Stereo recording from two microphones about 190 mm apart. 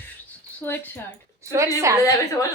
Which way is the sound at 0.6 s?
10° left (ahead or behind).